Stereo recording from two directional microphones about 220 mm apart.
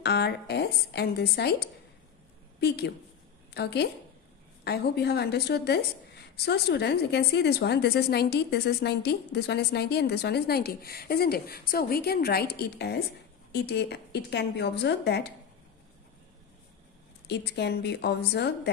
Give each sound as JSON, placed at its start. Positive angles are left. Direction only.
{"t": 0.0, "sound": "a woman's voice", "side_deg": 50}
{"t": 17.3, "sound": "a woman's voice", "side_deg": 50}